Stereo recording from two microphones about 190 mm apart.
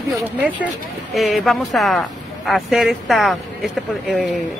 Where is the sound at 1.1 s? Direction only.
Centre (ahead or behind).